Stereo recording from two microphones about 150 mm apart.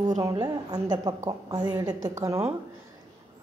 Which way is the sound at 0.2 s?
25° right (ahead or behind).